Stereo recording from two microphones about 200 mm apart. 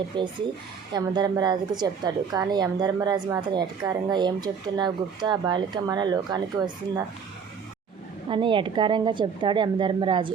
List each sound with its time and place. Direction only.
0.1 s speech: 25° right (ahead or behind)
8.3 s speech: 25° right (ahead or behind)